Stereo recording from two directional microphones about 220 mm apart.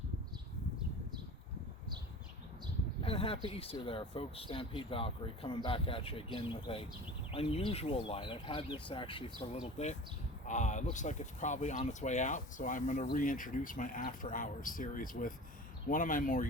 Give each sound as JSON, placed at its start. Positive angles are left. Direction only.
{"t": 3.0, "sound": "speech", "side_deg": 25}
{"t": 10.4, "sound": "speech", "side_deg": 35}